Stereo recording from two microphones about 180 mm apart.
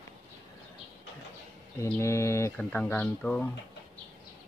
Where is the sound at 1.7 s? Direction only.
10° left (ahead or behind).